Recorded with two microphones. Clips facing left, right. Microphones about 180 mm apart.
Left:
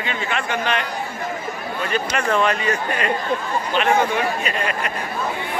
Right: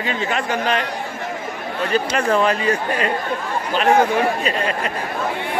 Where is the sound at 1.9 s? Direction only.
35° right (ahead or behind).